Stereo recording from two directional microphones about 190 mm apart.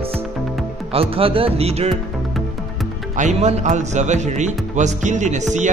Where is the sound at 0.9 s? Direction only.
30° right (ahead or behind).